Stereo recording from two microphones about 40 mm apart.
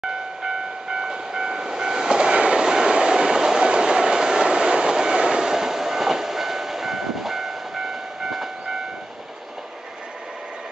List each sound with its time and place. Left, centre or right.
0.0 s train: centre